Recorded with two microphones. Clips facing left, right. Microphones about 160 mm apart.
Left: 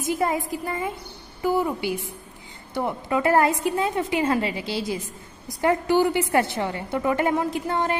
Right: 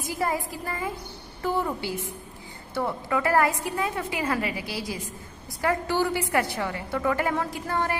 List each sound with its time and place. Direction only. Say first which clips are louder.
0.0 s a woman's voice: left 4 dB; 20° left (ahead or behind)